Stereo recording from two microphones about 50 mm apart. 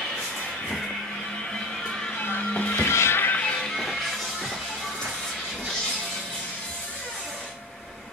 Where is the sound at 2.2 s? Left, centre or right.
Left.